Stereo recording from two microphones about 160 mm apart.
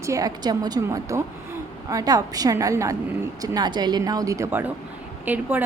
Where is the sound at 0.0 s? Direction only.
20° right (ahead or behind).